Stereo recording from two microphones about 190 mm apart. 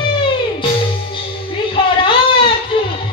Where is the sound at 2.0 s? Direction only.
25° left (ahead or behind).